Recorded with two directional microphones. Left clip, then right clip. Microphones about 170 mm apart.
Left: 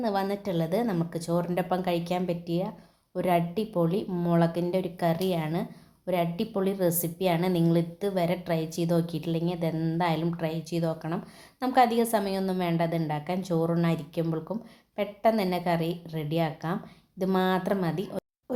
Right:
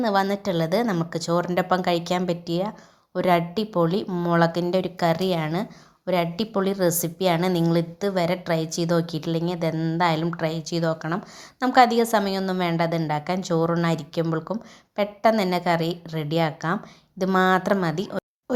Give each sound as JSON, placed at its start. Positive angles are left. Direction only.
{"t": 0.0, "sound": "a woman's voice", "side_deg": -15}